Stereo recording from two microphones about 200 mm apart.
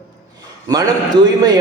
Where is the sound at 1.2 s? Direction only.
20° right (ahead or behind).